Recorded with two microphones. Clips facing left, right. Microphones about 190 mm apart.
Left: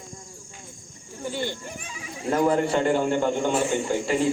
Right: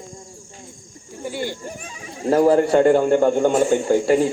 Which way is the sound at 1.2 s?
10° right (ahead or behind).